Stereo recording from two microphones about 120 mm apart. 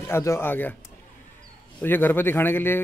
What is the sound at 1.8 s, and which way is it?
Speech, 15° left (ahead or behind).